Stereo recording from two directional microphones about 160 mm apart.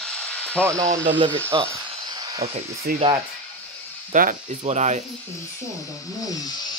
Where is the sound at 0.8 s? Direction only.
50° right (ahead or behind).